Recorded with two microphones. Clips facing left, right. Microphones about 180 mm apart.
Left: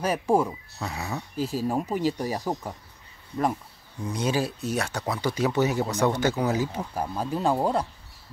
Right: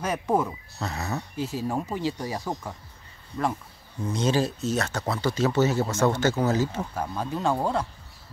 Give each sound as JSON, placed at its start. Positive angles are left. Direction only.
{"t": 0.1, "sound": "speech", "side_deg": 10}
{"t": 1.3, "sound": "speech", "side_deg": 35}
{"t": 1.7, "sound": "speech", "side_deg": 10}
{"t": 4.0, "sound": "speech", "side_deg": 10}